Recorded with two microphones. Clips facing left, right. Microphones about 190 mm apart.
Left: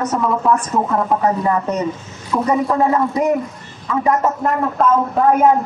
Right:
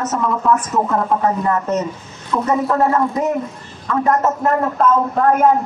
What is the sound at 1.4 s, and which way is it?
Speech, 15° left (ahead or behind).